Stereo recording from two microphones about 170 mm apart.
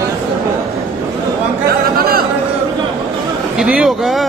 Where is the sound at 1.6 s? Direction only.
65° right (ahead or behind).